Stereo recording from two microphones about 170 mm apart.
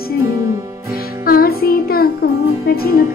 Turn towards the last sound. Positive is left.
turn(degrees=65)  # may be behind; listen again after turning